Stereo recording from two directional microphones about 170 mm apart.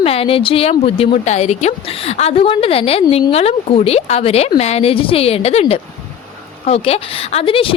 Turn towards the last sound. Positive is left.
turn(degrees=30)  # may be behind; listen again after turning